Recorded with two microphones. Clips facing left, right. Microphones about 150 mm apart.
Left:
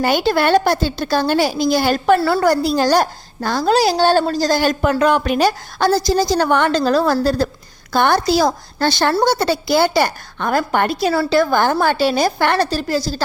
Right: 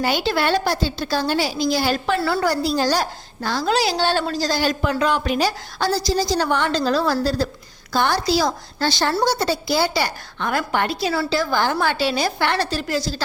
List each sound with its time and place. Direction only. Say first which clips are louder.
0.0 s a woman's voice: left 5 dB; 50° left (ahead or behind)